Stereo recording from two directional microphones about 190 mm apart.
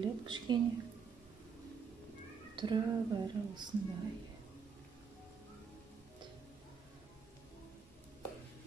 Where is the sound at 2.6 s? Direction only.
25° right (ahead or behind).